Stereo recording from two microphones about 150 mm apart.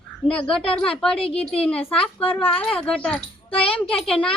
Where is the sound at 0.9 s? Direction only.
5° left (ahead or behind).